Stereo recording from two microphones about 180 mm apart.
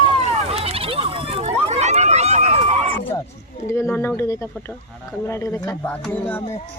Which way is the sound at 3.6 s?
15° left (ahead or behind).